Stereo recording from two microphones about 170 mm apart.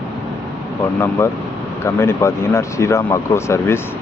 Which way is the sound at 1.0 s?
15° left (ahead or behind).